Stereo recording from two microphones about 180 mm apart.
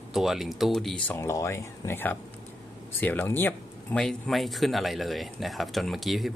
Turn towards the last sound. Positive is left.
turn(degrees=0)  # may be behind; listen again after turning